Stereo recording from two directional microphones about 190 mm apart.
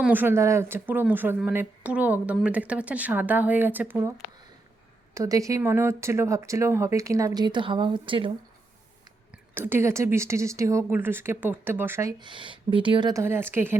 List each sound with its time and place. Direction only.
0.0 s speech: 10° right (ahead or behind)
5.1 s speech: 15° right (ahead or behind)
9.6 s speech: 10° right (ahead or behind)